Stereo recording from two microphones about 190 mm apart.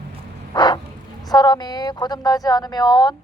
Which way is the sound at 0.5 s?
25° left (ahead or behind).